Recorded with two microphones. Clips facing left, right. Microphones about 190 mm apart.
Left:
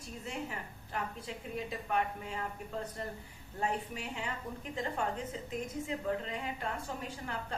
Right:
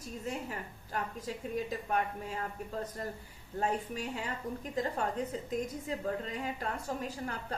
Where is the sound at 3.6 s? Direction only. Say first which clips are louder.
Right 3 dB; 40° right (ahead or behind).